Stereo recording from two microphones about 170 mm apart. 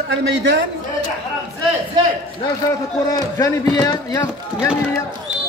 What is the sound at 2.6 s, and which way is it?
Speech, 20° left (ahead or behind).